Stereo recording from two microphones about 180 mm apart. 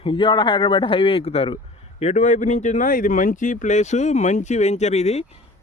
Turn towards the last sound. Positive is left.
turn(degrees=35)  # may be behind; listen again after turning